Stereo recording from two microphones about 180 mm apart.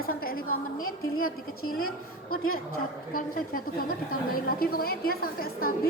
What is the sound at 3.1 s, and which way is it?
A woman's voice, 50° left (ahead or behind).